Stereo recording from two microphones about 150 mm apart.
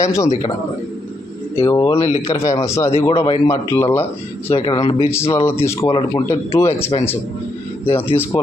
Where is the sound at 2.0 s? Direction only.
45° left (ahead or behind).